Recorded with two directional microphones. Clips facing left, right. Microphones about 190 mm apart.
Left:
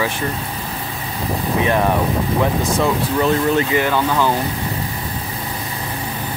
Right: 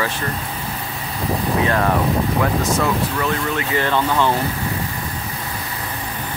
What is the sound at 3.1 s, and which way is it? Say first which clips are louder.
Speech: left 6 dB; 30° left (ahead or behind).